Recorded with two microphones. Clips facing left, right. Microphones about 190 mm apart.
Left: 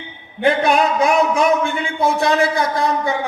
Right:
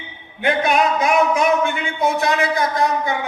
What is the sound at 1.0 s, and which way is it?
A man's voice, 30° left (ahead or behind).